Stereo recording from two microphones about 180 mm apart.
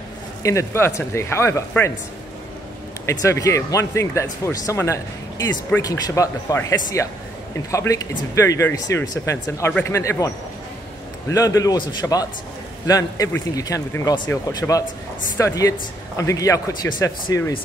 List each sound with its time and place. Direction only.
0.4 s speech: 15° left (ahead or behind)
3.1 s speech: 15° left (ahead or behind)